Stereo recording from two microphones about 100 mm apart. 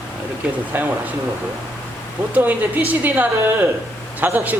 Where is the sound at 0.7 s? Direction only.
20° right (ahead or behind).